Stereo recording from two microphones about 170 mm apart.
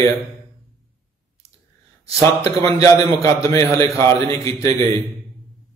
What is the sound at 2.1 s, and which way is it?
Speech, 40° right (ahead or behind).